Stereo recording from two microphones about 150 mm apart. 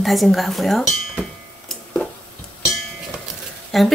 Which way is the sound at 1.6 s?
Centre (ahead or behind).